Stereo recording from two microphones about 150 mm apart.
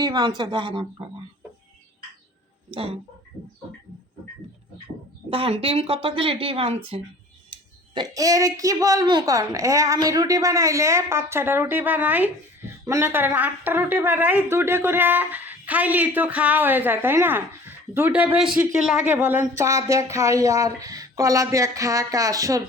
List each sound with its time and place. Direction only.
0.0 s a woman's voice: 25° right (ahead or behind)
2.6 s speech: 40° right (ahead or behind)
5.3 s speech: 40° right (ahead or behind)
7.9 s a woman's voice: 25° right (ahead or behind)